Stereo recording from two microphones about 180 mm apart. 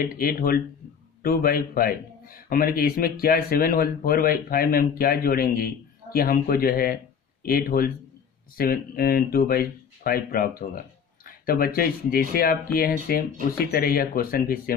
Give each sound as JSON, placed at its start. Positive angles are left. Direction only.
{"t": 0.0, "sound": "a man's voice", "side_deg": 55}